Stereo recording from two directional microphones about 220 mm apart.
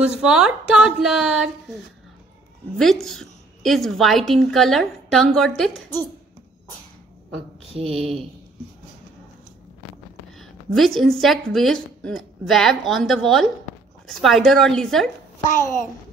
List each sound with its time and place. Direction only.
0.0 s a woman's voice: 5° right (ahead or behind)
2.8 s a woman's voice: centre (ahead or behind)
7.7 s speech: 25° right (ahead or behind)
10.4 s a woman's voice: centre (ahead or behind)